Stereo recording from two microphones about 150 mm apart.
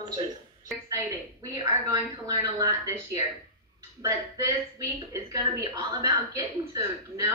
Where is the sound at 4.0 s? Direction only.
20° right (ahead or behind).